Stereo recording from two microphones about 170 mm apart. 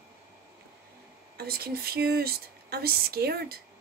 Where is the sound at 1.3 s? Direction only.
65° right (ahead or behind).